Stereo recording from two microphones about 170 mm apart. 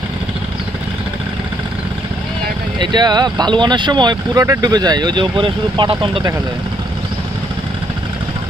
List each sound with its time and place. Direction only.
2.8 s speech: 25° right (ahead or behind)